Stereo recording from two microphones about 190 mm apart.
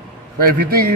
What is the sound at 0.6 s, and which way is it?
Speech, 55° right (ahead or behind).